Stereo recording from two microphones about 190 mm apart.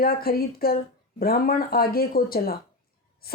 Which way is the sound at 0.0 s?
50° left (ahead or behind).